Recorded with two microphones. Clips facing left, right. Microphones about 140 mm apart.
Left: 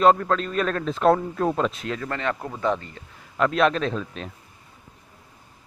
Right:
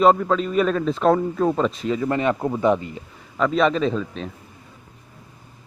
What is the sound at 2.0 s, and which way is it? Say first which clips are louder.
Speech: right 7 dB; 15° right (ahead or behind).